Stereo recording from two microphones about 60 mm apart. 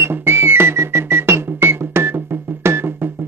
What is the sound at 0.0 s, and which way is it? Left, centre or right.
Music, right.